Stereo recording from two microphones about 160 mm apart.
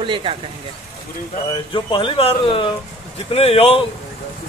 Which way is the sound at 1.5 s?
30° left (ahead or behind).